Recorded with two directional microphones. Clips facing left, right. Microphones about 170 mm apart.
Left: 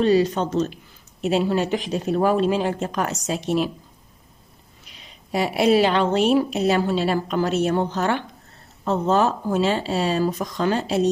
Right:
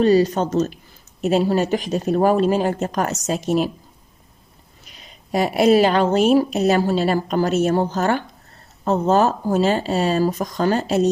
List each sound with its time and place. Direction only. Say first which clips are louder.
0.0 s a woman's voice: right 3 dB; 40° right (ahead or behind)
4.9 s a woman's voice: right 3 dB; 45° right (ahead or behind)